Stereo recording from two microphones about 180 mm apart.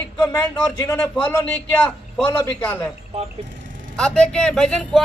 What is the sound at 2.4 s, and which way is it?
Speech, 15° left (ahead or behind).